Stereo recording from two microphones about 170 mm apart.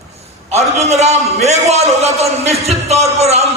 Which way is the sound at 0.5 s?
40° right (ahead or behind).